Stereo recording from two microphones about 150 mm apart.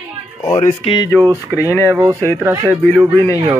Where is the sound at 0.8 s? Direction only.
40° left (ahead or behind).